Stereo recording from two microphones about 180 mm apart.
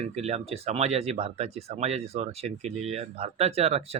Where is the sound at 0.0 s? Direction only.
35° right (ahead or behind).